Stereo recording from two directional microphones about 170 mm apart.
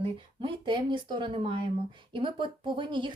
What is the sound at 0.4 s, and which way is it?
Speech, 25° right (ahead or behind).